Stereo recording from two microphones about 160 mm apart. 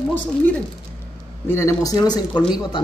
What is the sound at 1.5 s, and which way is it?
A man's voice, 20° left (ahead or behind).